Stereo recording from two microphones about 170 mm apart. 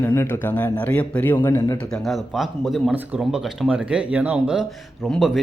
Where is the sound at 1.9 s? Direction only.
Centre (ahead or behind).